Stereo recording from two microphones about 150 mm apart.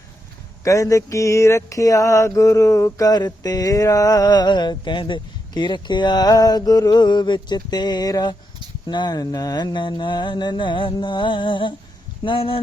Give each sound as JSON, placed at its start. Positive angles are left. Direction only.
{"t": 0.6, "sound": "mantra", "side_deg": 20}